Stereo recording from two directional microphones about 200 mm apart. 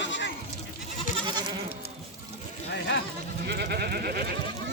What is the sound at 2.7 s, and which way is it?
Sheep, 60° left (ahead or behind).